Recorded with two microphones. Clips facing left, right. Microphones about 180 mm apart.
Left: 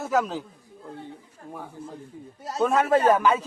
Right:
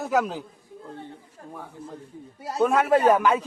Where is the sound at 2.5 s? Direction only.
10° right (ahead or behind).